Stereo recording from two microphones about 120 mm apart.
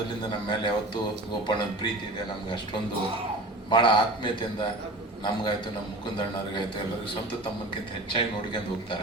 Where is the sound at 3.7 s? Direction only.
40° left (ahead or behind).